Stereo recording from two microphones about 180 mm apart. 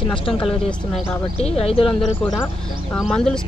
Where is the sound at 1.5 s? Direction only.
35° left (ahead or behind).